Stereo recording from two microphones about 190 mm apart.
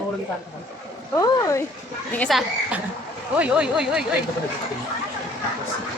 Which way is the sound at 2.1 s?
5° left (ahead or behind).